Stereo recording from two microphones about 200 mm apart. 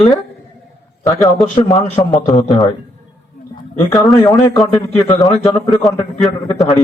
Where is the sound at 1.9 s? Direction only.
15° left (ahead or behind).